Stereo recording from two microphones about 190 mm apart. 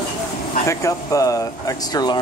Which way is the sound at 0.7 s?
15° left (ahead or behind).